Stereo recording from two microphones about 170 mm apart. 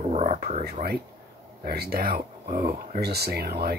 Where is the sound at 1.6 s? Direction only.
65° right (ahead or behind).